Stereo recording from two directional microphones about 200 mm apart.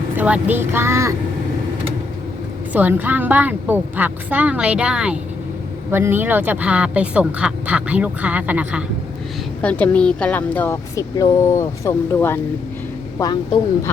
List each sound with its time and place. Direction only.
0.2 s speech: 10° right (ahead or behind)
2.7 s speech: 10° right (ahead or behind)
9.6 s speech: 5° left (ahead or behind)